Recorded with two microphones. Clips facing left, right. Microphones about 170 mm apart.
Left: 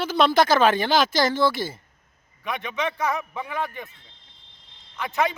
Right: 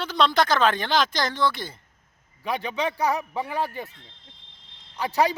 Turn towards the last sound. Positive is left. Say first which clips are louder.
# right 2 dB
turn(degrees=-35)  # may be behind; listen again after turning